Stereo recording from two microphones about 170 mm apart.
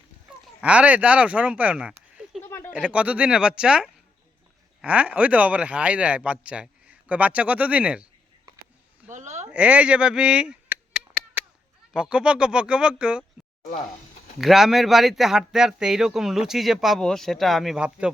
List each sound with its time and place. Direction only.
0.6 s speech: 10° right (ahead or behind)
8.5 s a sound: 20° right (ahead or behind)
9.0 s a sound: 45° right (ahead or behind)
9.5 s speech: 5° right (ahead or behind)
11.9 s speech: 5° right (ahead or behind)
14.3 s speech: centre (ahead or behind)